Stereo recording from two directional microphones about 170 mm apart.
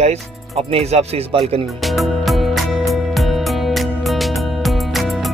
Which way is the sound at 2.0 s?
Centre (ahead or behind).